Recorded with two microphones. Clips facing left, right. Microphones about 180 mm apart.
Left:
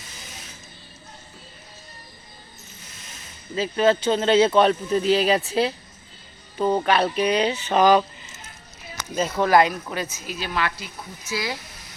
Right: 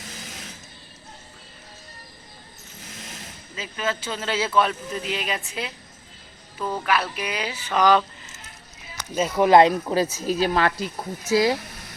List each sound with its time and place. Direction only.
3.5 s speech: 35° left (ahead or behind)
6.6 s music: 30° left (ahead or behind)
9.3 s speech: 15° right (ahead or behind)
9.6 s speech: 30° right (ahead or behind)